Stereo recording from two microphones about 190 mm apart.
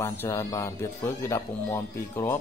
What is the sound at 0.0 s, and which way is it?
Speech, 15° left (ahead or behind).